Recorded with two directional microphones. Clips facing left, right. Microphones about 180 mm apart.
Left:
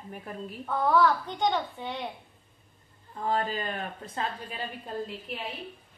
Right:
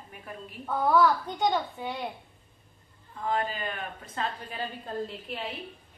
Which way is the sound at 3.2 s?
35° left (ahead or behind).